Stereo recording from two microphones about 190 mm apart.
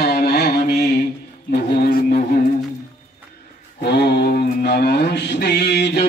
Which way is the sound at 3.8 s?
60° left (ahead or behind).